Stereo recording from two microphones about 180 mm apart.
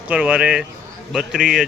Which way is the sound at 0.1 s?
5° right (ahead or behind).